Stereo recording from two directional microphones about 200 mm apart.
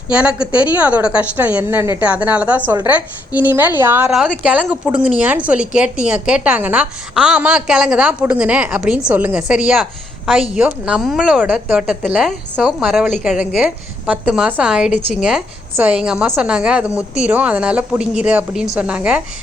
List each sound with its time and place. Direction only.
0.1 s a woman's voice: 5° right (ahead or behind)